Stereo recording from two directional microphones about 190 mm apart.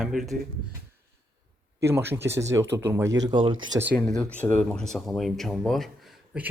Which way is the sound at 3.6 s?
75° right (ahead or behind).